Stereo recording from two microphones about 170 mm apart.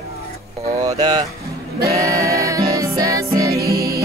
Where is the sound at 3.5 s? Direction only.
65° right (ahead or behind).